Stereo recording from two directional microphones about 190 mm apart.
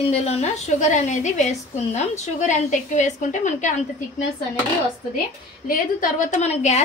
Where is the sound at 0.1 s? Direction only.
35° left (ahead or behind).